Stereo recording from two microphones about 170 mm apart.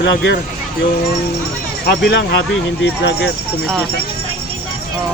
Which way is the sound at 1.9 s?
75° left (ahead or behind).